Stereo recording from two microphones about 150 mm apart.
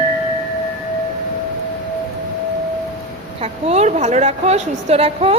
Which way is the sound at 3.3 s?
45° right (ahead or behind).